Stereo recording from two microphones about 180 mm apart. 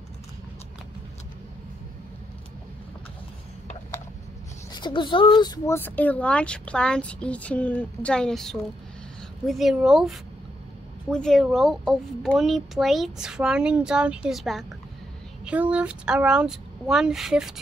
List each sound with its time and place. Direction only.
4.7 s speech: 25° left (ahead or behind)
5.8 s a child's voice: 10° left (ahead or behind)